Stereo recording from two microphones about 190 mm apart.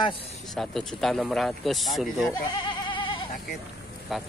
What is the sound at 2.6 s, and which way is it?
Goat, 25° left (ahead or behind).